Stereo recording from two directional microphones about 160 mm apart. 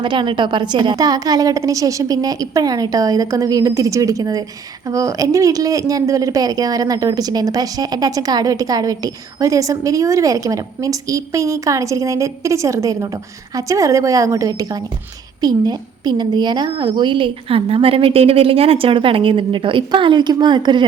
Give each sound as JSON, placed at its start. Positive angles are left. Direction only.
{"t": 0.0, "sound": "a woman's voice", "side_deg": -30}